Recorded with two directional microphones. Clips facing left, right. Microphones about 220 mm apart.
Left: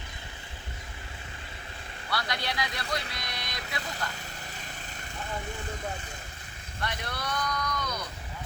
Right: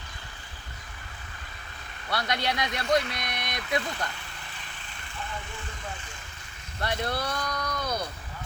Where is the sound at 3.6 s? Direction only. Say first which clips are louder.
Right 8 dB; 40° left (ahead or behind).